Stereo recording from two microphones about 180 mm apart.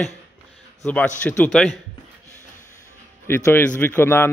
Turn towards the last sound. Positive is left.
turn(degrees=15)  # may be behind; listen again after turning